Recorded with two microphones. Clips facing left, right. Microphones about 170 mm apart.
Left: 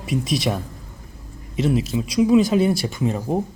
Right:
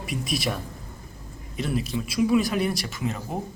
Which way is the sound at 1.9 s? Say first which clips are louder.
Left 5 dB; 15° left (ahead or behind).